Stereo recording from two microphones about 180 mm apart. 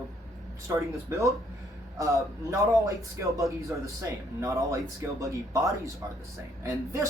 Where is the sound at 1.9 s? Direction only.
20° right (ahead or behind).